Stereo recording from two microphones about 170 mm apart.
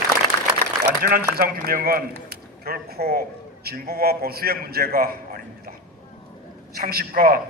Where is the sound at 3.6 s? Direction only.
65° right (ahead or behind).